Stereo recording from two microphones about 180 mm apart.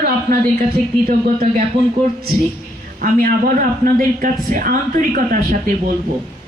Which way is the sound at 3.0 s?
55° right (ahead or behind).